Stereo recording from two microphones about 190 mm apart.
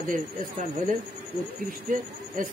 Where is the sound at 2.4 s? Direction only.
45° right (ahead or behind).